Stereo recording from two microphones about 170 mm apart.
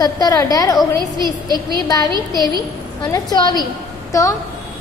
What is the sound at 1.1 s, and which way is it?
Speech, 25° right (ahead or behind).